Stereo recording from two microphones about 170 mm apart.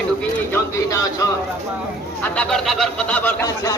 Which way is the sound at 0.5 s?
20° left (ahead or behind).